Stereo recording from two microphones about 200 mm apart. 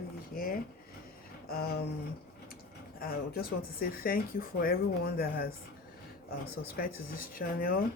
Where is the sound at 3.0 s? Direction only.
50° left (ahead or behind).